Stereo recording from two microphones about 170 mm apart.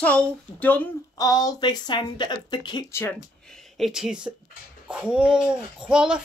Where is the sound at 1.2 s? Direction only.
20° left (ahead or behind).